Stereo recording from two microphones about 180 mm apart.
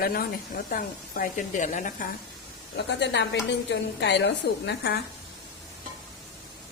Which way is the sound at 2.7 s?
75° left (ahead or behind).